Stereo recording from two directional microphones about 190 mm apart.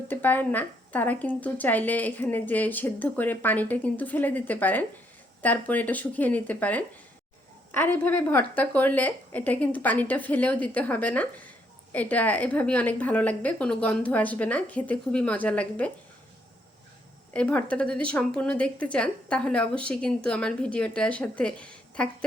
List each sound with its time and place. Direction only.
0.1 s speech: 10° left (ahead or behind)
17.3 s speech: 5° left (ahead or behind)